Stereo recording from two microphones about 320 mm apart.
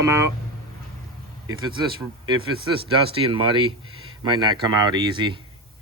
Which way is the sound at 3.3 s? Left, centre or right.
Centre.